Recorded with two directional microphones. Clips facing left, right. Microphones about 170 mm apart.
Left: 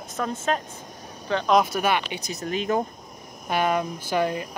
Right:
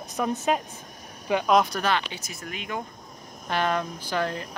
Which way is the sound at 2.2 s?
35° left (ahead or behind).